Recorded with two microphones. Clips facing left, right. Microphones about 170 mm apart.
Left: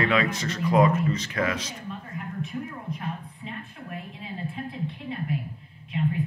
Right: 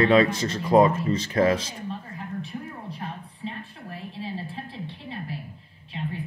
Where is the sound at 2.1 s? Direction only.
30° right (ahead or behind).